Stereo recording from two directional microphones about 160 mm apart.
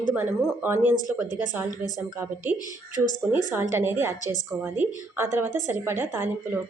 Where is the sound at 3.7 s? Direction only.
15° right (ahead or behind).